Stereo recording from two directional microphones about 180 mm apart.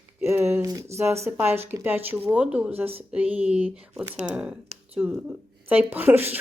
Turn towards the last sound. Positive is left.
turn(degrees=-10)  # may be behind; listen again after turning